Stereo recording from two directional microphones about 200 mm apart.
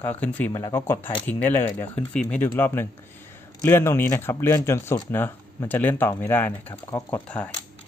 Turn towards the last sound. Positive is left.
turn(degrees=10)  # may be behind; listen again after turning